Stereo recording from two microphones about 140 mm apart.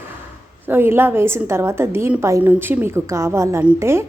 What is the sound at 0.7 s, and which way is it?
A woman's voice, 15° right (ahead or behind).